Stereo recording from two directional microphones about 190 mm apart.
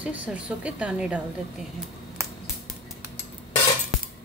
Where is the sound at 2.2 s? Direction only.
15° right (ahead or behind).